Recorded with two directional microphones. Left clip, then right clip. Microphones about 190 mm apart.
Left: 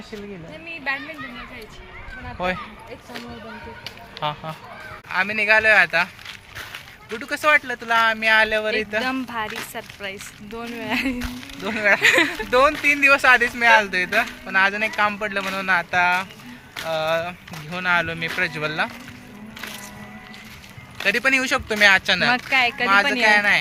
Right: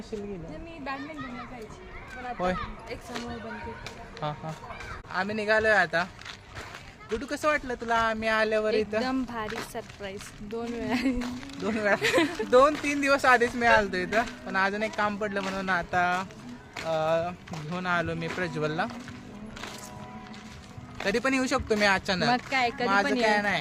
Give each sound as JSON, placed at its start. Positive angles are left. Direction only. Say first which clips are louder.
{"t": 3.8, "sound": "speech", "louder": "left 10 dB", "side_deg": -5}
{"t": 5.0, "sound": "speech", "louder": "left 9 dB", "side_deg": -20}
{"t": 7.2, "sound": "speech", "louder": "left 10 dB", "side_deg": -15}
{"t": 9.0, "sound": "speech", "louder": "left 6 dB", "side_deg": 5}
{"t": 11.8, "sound": "speech", "louder": "left 8 dB", "side_deg": -15}
{"t": 12.0, "sound": "speech", "louder": "left 8 dB", "side_deg": 10}
{"t": 12.5, "sound": "speech", "louder": "left 3 dB", "side_deg": -15}
{"t": 14.4, "sound": "speech", "louder": "left 8 dB", "side_deg": -5}
{"t": 16.7, "sound": "a sound", "louder": "left 4 dB", "side_deg": 0}
{"t": 17.0, "sound": "speech", "louder": "left 4 dB", "side_deg": -10}
{"t": 21.0, "sound": "speech", "louder": "left 8 dB", "side_deg": -25}
{"t": 22.4, "sound": "speech", "louder": "left 8 dB", "side_deg": 10}
{"t": 23.3, "sound": "speech", "louder": "left 9 dB", "side_deg": -15}